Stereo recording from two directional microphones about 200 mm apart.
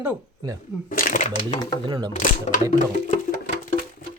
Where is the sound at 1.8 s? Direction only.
20° right (ahead or behind).